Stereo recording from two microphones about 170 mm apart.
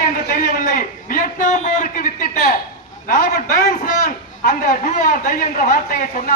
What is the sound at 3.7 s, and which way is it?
A man's voice, 50° left (ahead or behind).